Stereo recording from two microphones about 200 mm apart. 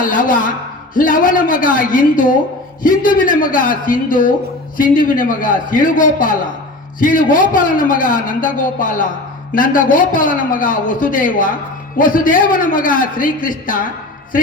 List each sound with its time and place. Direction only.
0.0 s a man's voice: 45° left (ahead or behind)